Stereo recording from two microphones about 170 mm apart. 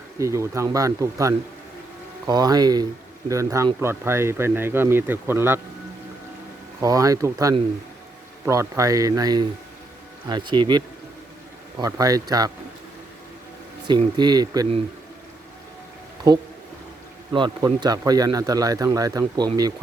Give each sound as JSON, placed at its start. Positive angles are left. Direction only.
{"t": 0.2, "sound": "speech", "side_deg": -15}
{"t": 6.7, "sound": "speech", "side_deg": -20}
{"t": 14.2, "sound": "speech", "side_deg": -25}
{"t": 16.3, "sound": "speech", "side_deg": -20}